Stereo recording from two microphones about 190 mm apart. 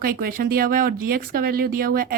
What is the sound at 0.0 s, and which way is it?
Speech, 50° right (ahead or behind).